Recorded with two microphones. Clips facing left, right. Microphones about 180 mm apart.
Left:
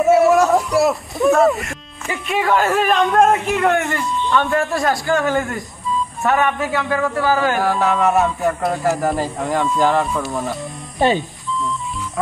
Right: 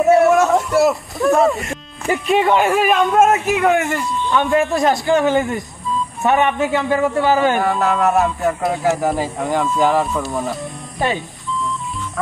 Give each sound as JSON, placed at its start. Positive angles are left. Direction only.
{"t": 0.0, "sound": "a sound", "side_deg": 0}
{"t": 2.5, "sound": "speech", "side_deg": -10}
{"t": 4.3, "sound": "a man's voice", "side_deg": -15}
{"t": 7.5, "sound": "speech", "side_deg": 0}
{"t": 10.3, "sound": "music", "side_deg": 0}